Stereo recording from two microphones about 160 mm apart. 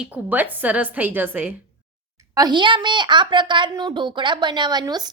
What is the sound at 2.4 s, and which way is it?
A woman's voice, 25° right (ahead or behind).